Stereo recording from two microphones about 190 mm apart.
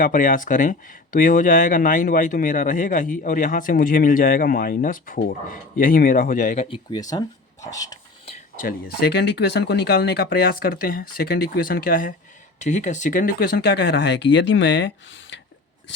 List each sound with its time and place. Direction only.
0.0 s speech: 45° left (ahead or behind)
6.7 s speech: 25° left (ahead or behind)
8.3 s speech: 45° left (ahead or behind); by 15.4 s 70° left (ahead or behind)